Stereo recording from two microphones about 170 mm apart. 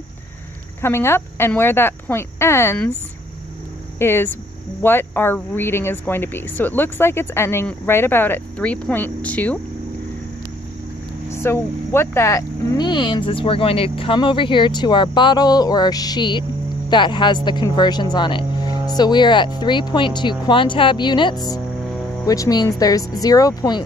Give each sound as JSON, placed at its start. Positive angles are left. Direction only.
{"t": 0.7, "sound": "speech", "side_deg": 15}
{"t": 4.0, "sound": "speech", "side_deg": 15}
{"t": 11.4, "sound": "speech", "side_deg": 15}